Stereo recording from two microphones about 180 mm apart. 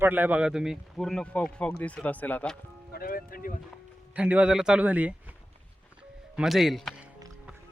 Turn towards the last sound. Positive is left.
turn(degrees=0)  # may be behind; listen again after turning